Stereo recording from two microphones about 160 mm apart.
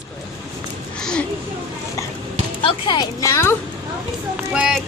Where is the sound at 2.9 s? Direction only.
25° left (ahead or behind).